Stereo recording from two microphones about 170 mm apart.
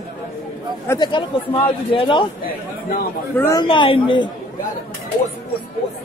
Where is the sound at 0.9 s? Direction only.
25° left (ahead or behind).